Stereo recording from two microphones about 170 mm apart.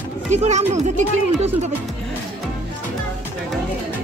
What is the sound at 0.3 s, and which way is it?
Speech, 40° right (ahead or behind).